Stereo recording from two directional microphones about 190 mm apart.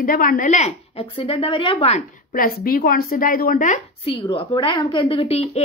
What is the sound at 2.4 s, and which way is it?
A woman's voice, 50° left (ahead or behind).